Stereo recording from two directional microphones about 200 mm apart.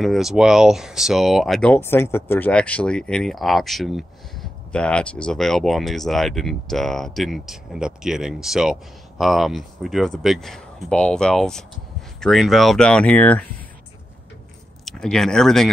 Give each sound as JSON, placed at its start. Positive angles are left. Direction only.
{"t": 0.0, "sound": "speech", "side_deg": 0}
{"t": 14.9, "sound": "speech", "side_deg": 0}